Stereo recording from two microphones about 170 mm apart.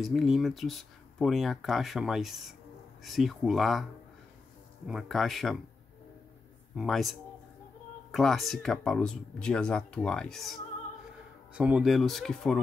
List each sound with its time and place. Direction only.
0.0 s speech: centre (ahead or behind)
4.8 s speech: centre (ahead or behind)
6.7 s speech: centre (ahead or behind)